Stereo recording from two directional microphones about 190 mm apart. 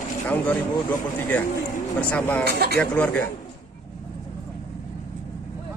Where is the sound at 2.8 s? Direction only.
5° left (ahead or behind).